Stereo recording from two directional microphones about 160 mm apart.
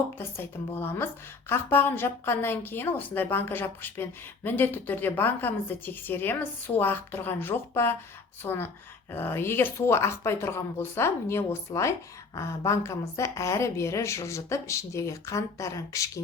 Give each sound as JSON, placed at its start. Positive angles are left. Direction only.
{"t": 0.2, "sound": "a woman's voice", "side_deg": 15}